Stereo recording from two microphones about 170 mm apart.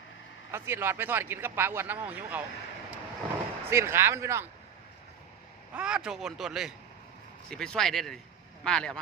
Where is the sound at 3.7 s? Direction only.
15° right (ahead or behind).